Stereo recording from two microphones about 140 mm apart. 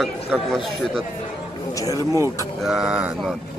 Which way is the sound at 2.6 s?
5° right (ahead or behind).